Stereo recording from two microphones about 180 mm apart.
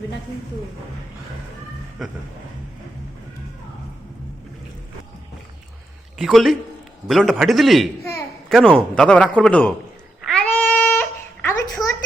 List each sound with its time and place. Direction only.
2.0 s a man's voice: centre (ahead or behind)
6.1 s a man's voice: centre (ahead or behind)
10.2 s a sound: 5° left (ahead or behind)